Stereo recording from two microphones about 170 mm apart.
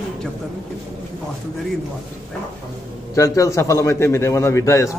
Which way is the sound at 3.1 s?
20° left (ahead or behind).